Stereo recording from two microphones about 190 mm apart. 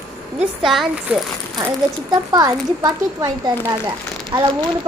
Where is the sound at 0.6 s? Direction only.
Centre (ahead or behind).